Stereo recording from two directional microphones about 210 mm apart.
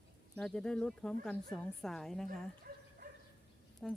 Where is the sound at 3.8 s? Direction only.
5° left (ahead or behind).